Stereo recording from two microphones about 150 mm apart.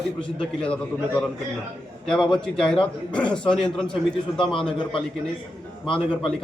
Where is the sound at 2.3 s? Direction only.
5° left (ahead or behind).